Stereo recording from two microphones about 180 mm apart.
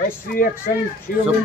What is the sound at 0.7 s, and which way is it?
Speech, 50° left (ahead or behind).